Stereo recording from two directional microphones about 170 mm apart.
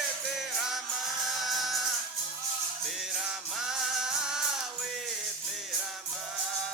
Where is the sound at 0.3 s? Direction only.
Centre (ahead or behind).